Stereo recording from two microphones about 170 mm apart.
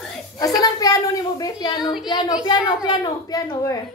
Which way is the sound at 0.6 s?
20° left (ahead or behind).